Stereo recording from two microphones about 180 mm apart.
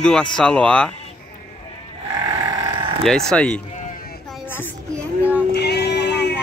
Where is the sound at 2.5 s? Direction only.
25° right (ahead or behind).